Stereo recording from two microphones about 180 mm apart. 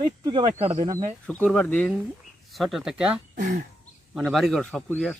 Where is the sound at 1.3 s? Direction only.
5° left (ahead or behind).